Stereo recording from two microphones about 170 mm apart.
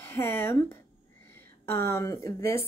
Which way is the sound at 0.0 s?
15° left (ahead or behind).